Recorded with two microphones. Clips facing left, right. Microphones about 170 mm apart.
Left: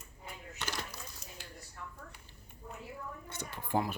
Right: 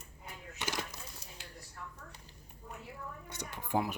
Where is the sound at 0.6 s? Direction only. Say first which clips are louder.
Right 2 dB; 15° right (ahead or behind).